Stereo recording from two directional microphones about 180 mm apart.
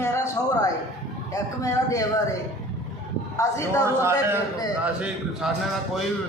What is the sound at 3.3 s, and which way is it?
Speech, 15° left (ahead or behind).